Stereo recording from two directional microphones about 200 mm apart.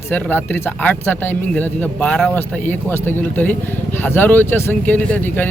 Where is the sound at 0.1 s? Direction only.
10° left (ahead or behind).